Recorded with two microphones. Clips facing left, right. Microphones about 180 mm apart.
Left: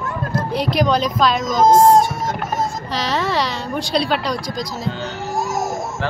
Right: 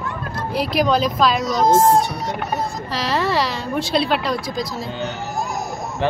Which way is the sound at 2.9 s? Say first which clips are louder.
Even; centre (ahead or behind).